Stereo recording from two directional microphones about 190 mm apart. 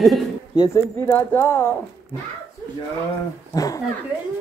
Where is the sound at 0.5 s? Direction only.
20° left (ahead or behind).